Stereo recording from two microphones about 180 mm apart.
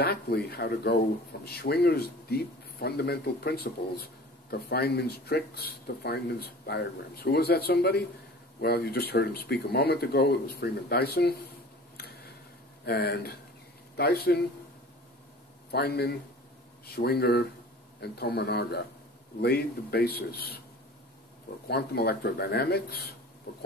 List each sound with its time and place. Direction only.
0.0 s speech: 60° left (ahead or behind)
12.0 s tick: 60° left (ahead or behind)
12.8 s speech: 60° left (ahead or behind)
15.7 s speech: 65° left (ahead or behind)
21.6 s speech: 65° left (ahead or behind)
23.5 s oink: 60° left (ahead or behind)